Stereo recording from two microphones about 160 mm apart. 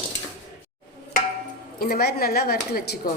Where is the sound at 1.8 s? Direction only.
80° left.